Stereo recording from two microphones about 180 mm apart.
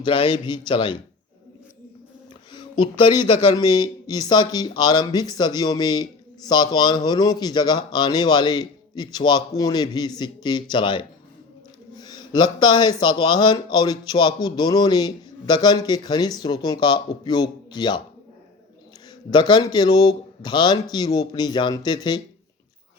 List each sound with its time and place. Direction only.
0.0 s speech: 25° left (ahead or behind)
2.5 s speech: 25° left (ahead or behind)
19.3 s speech: 25° left (ahead or behind)